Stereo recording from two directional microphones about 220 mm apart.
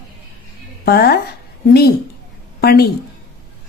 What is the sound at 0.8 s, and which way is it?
Speech, 45° left (ahead or behind).